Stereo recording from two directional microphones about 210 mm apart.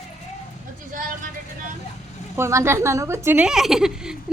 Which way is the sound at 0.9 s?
40° right (ahead or behind).